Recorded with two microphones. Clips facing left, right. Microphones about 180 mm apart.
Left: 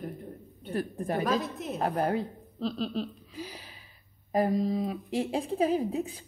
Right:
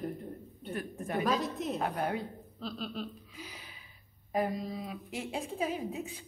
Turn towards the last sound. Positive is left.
turn(degrees=35)  # may be behind; listen again after turning